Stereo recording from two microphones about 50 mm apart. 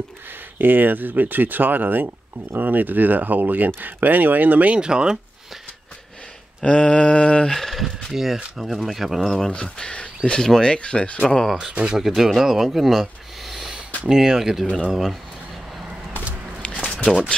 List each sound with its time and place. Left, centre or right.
0.6 s speech: right
4.7 s speech: centre
6.6 s speech: left
7.4 s speech: centre
9.2 s speech: centre
9.5 s speech: centre
11.2 s speech: centre
11.7 s speech: right
12.0 s speech: centre
16.6 s a sound: left